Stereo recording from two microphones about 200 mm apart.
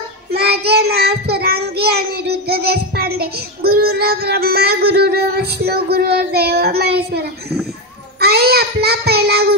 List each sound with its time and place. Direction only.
0.3 s child singing: 55° right (ahead or behind)